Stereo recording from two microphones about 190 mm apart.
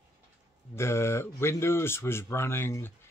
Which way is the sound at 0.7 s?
15° left (ahead or behind).